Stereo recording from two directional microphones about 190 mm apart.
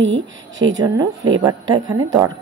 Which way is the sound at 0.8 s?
20° right (ahead or behind).